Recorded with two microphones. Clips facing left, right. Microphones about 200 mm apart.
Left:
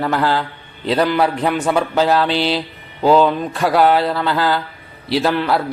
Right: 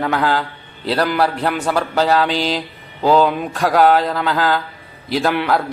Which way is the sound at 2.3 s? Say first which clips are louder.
Left 2 dB; 40° right (ahead or behind).